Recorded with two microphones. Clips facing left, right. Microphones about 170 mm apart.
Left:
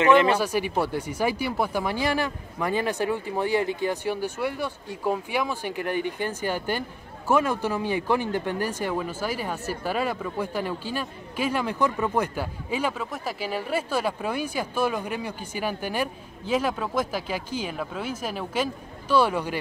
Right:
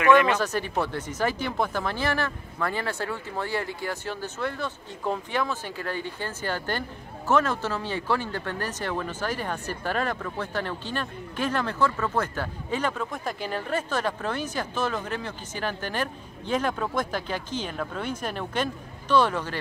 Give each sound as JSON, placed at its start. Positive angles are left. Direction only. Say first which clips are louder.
{"t": 0.3, "sound": "speech", "louder": "left 2 dB", "side_deg": 10}